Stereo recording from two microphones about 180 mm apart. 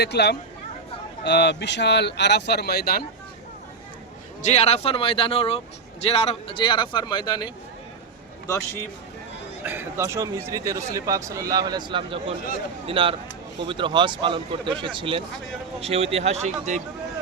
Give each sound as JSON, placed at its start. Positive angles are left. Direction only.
{"t": 0.0, "sound": "speech", "side_deg": 65}
{"t": 4.4, "sound": "speech", "side_deg": 40}
{"t": 8.4, "sound": "a man's voice", "side_deg": 15}
{"t": 9.6, "sound": "speech", "side_deg": -15}